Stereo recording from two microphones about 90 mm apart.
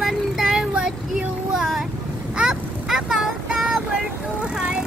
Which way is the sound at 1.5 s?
5° right (ahead or behind).